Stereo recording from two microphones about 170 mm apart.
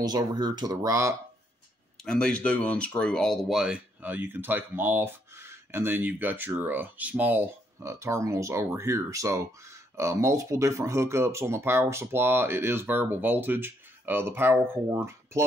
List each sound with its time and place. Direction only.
0.0 s speech: 25° right (ahead or behind)
2.0 s speech: 5° left (ahead or behind); by 15.4 s 15° right (ahead or behind)